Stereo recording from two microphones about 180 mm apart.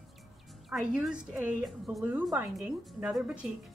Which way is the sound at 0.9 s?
5° right (ahead or behind).